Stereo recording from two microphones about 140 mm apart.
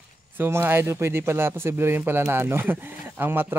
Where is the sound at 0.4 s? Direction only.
15° right (ahead or behind).